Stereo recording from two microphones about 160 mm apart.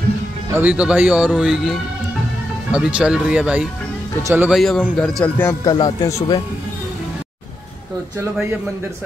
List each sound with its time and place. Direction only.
0.6 s speech: 10° right (ahead or behind)
2.7 s speech: 5° right (ahead or behind)
4.5 s speech: centre (ahead or behind)
5.4 s a man's voice: 20° left (ahead or behind)